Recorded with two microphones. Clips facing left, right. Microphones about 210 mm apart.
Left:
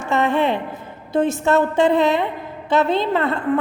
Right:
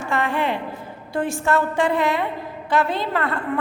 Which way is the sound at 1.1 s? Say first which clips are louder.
Left 4 dB; 20° left (ahead or behind).